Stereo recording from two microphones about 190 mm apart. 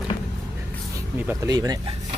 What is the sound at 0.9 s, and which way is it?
Speech, 15° right (ahead or behind).